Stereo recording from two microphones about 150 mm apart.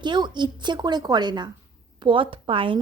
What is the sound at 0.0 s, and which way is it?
A woman's voice, 30° right (ahead or behind).